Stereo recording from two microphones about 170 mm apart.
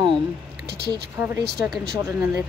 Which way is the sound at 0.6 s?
70° right (ahead or behind).